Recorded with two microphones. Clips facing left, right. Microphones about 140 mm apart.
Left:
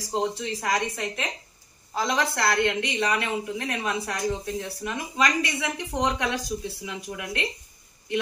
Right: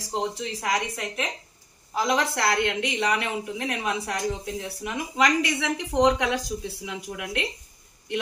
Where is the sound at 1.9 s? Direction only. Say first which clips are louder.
Right 2 dB; 10° right (ahead or behind).